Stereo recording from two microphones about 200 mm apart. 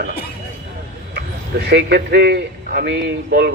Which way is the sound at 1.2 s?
55° right (ahead or behind).